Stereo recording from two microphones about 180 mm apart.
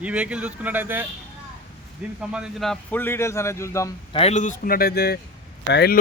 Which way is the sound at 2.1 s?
5° right (ahead or behind).